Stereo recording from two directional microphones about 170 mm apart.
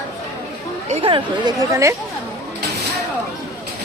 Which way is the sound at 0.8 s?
35° right (ahead or behind).